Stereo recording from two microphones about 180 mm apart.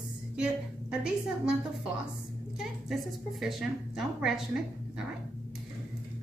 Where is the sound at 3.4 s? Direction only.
Centre (ahead or behind).